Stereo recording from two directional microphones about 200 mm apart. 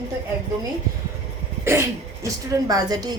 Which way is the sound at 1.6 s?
15° right (ahead or behind).